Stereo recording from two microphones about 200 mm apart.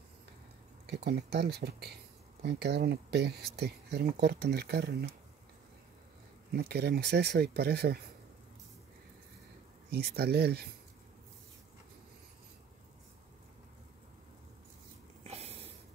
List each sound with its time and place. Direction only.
0.8 s speech: 55° right (ahead or behind)
6.5 s speech: 55° right (ahead or behind)
9.8 s speech: 55° right (ahead or behind)
15.2 s a sound: 30° right (ahead or behind)